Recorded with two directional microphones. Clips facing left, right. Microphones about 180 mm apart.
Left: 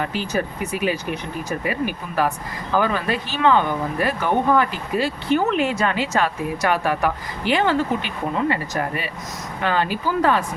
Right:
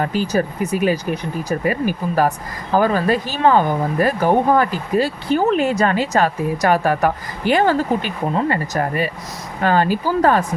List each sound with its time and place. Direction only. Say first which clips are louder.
0.0 s speech: right 5 dB; 40° right (ahead or behind)